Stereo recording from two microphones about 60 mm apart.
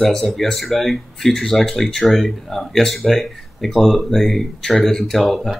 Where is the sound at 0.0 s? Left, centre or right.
Centre.